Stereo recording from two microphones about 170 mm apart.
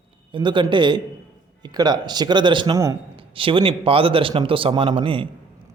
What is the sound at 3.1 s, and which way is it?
Speech, 30° right (ahead or behind).